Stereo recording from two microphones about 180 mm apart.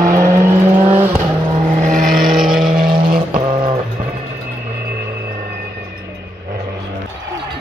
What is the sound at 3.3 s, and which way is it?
Vehicle, 25° right (ahead or behind).